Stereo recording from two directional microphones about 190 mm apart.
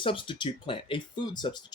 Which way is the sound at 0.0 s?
25° left (ahead or behind).